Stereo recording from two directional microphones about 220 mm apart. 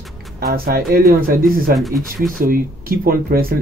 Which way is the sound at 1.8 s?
Centre (ahead or behind).